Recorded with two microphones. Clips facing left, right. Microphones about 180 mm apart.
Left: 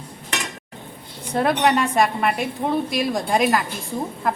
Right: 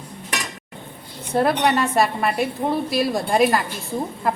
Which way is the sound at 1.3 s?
Centre (ahead or behind).